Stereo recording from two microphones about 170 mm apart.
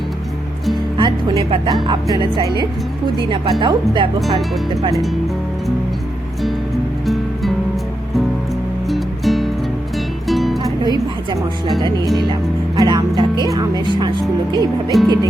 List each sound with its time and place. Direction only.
0.9 s a woman's voice: 25° right (ahead or behind)
4.9 s speech: centre (ahead or behind)
7.0 s music: centre (ahead or behind)
8.9 s music: centre (ahead or behind)
10.8 s a sound: 25° right (ahead or behind)
12.3 s music: 25° right (ahead or behind)
13.6 s speech: 25° right (ahead or behind)